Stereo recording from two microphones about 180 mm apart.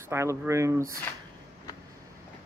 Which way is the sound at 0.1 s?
15° right (ahead or behind).